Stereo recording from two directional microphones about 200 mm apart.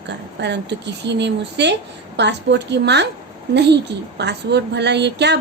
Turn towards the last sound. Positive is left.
turn(degrees=-60)  # may be behind; listen again after turning